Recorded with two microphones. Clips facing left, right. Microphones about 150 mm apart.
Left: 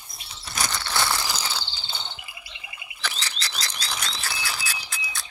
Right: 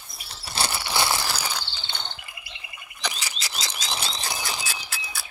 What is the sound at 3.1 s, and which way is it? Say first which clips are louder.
Frog: even; 10° right (ahead or behind).